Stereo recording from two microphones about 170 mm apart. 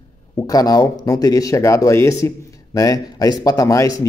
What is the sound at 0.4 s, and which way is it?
Speech, 20° left (ahead or behind).